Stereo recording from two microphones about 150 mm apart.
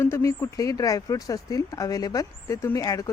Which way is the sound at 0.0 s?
20° left (ahead or behind).